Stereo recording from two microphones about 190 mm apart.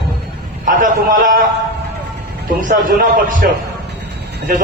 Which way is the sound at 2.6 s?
45° right (ahead or behind).